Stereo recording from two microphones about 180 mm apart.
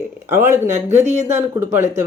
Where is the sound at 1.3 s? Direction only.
15° right (ahead or behind).